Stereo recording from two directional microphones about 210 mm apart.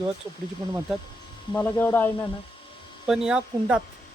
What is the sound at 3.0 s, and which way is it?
Speech, 5° right (ahead or behind).